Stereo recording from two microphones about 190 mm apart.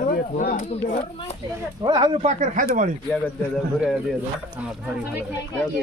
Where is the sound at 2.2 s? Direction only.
40° right (ahead or behind).